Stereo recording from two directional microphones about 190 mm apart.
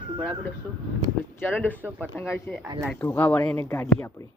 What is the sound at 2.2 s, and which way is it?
Speech, 15° left (ahead or behind).